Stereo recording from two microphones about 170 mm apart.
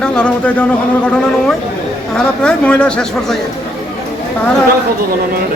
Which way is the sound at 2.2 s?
5° left (ahead or behind).